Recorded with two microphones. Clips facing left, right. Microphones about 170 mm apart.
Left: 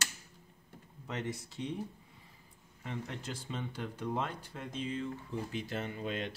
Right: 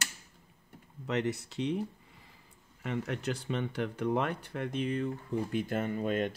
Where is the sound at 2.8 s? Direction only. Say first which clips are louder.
Right 7 dB; 70° right (ahead or behind); by 6.3 s 50° right (ahead or behind).